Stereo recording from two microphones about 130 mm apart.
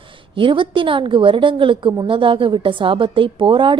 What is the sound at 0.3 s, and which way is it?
A woman's voice, 40° right (ahead or behind).